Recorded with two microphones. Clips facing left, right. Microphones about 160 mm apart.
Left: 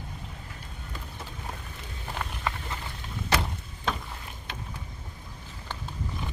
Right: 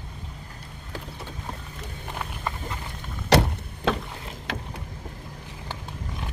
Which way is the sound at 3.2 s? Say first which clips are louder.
Right 9 dB; 70° right (ahead or behind).